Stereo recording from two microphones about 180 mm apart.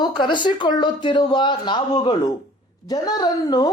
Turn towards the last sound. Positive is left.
turn(degrees=20)  # may be behind; listen again after turning